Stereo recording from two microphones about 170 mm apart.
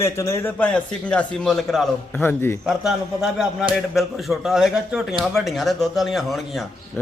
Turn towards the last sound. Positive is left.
turn(degrees=0)  # may be behind; listen again after turning